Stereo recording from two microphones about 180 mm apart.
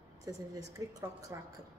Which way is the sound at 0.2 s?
20° right (ahead or behind).